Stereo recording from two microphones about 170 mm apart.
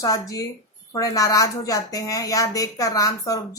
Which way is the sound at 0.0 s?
20° left (ahead or behind).